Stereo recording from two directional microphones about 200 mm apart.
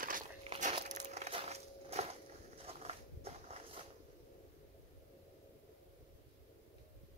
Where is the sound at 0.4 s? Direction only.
35° right (ahead or behind).